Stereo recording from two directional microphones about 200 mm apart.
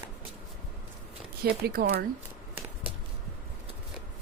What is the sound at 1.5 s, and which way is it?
Speech, 50° right (ahead or behind).